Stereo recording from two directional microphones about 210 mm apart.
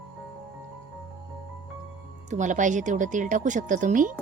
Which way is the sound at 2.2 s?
35° right (ahead or behind).